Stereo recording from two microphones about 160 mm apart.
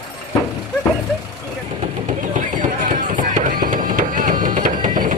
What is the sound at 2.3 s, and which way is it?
Music, 50° right (ahead or behind).